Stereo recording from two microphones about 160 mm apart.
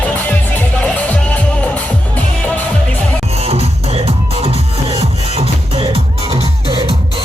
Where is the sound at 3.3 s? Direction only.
40° right (ahead or behind).